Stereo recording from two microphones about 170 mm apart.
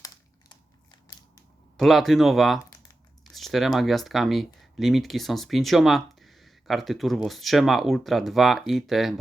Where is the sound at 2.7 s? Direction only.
20° left (ahead or behind).